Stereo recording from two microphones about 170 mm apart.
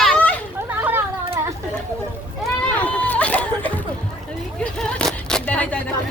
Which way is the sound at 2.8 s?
10° left (ahead or behind).